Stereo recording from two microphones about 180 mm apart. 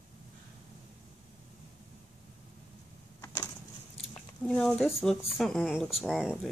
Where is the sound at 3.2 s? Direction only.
15° left (ahead or behind).